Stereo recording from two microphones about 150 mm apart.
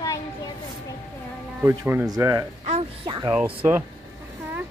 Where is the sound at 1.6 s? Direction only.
15° right (ahead or behind).